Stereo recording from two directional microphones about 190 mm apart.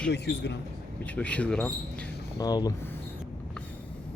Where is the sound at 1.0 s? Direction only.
5° left (ahead or behind).